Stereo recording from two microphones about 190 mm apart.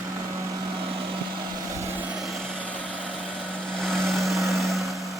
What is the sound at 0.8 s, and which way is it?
Vehicle, 30° right (ahead or behind).